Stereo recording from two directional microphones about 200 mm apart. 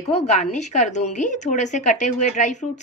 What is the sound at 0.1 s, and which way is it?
A woman's voice, 35° left (ahead or behind).